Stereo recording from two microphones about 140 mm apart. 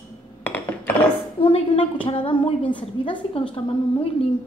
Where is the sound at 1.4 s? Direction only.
40° left (ahead or behind).